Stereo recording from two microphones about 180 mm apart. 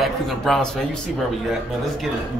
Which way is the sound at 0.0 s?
Centre (ahead or behind).